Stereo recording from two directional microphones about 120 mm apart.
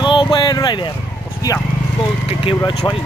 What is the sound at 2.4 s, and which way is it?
Speech, 45° left (ahead or behind).